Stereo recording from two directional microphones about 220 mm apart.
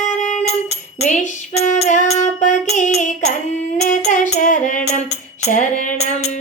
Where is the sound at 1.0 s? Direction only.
30° left (ahead or behind).